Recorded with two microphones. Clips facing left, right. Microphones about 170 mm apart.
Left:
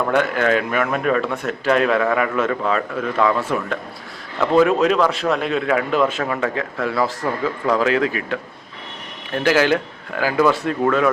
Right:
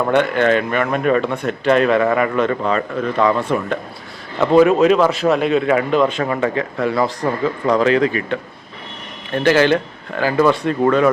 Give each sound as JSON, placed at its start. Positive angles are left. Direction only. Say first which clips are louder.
{"t": 0.1, "sound": "speech", "louder": "right 4 dB", "side_deg": 0}